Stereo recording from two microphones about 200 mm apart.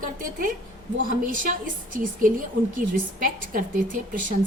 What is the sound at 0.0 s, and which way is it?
A woman's voice, 40° right (ahead or behind).